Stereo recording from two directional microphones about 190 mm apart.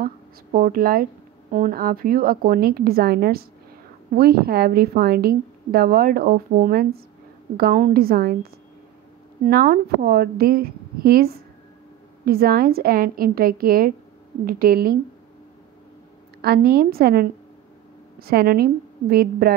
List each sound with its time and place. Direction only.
0.0 s a woman's voice: 50° right (ahead or behind)
16.3 s a woman's voice: 55° right (ahead or behind)